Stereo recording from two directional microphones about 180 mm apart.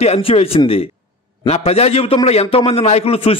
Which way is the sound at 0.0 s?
35° left (ahead or behind).